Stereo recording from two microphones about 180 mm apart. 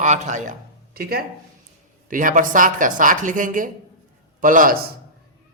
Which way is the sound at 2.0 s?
50° right (ahead or behind).